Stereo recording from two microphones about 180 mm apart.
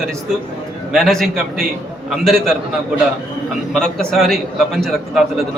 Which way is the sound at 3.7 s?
5° left (ahead or behind).